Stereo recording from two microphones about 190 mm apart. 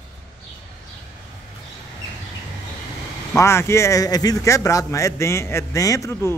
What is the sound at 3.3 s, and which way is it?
A man's voice, 15° left (ahead or behind).